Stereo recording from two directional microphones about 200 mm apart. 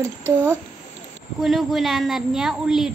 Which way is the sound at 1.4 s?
Centre (ahead or behind).